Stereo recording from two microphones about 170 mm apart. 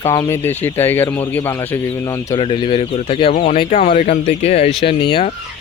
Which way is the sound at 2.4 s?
30° left (ahead or behind).